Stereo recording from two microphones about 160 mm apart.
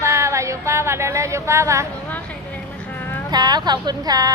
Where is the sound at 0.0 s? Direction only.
15° right (ahead or behind).